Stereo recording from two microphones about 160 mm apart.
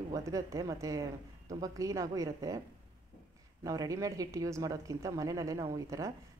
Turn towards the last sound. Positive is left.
turn(degrees=-20)  # may be behind; listen again after turning